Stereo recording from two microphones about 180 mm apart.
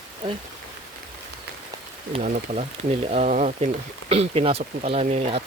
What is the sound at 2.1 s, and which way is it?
Speech, 40° right (ahead or behind).